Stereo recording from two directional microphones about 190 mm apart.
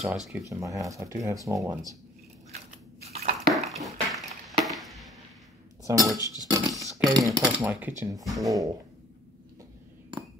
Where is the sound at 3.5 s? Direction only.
Centre (ahead or behind).